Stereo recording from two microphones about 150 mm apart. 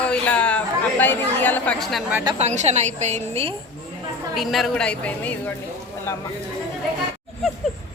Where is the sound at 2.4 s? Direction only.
50° right (ahead or behind).